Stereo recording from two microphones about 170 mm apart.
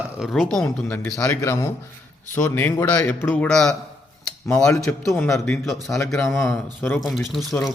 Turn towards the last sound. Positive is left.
turn(degrees=0)  # may be behind; listen again after turning